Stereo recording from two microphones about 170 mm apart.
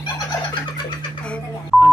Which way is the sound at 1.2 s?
5° left (ahead or behind).